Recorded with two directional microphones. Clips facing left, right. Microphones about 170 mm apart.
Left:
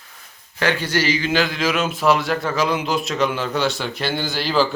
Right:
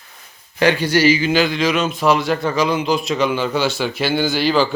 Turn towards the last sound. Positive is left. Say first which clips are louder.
# right 4 dB
turn(degrees=0)  # may be behind; listen again after turning